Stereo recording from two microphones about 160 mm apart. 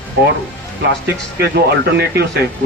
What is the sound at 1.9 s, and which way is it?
Speech, 90° right.